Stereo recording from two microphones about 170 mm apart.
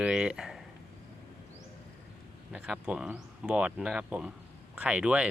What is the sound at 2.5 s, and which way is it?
Speech, 5° right (ahead or behind).